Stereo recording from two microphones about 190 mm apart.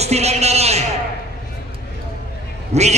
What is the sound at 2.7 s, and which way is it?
Quack, 35° right (ahead or behind).